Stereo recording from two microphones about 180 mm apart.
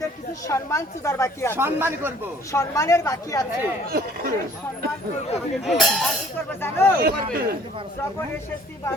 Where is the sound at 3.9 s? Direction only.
55° right (ahead or behind).